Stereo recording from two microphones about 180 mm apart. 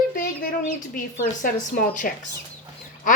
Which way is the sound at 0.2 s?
45° left (ahead or behind).